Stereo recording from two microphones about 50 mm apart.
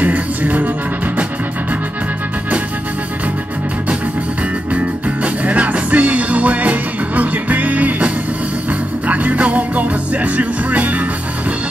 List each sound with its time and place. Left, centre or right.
0.0 s music: right
4.7 s music: right